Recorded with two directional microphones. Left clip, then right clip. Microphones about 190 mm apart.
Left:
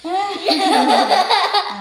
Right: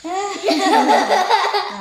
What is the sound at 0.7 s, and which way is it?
Baby laughter, 10° right (ahead or behind).